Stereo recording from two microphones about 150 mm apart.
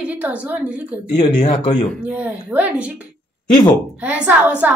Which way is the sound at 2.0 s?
10° right (ahead or behind).